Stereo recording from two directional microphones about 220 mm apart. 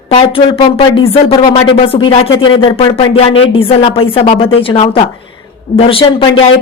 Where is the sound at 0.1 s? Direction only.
25° left (ahead or behind).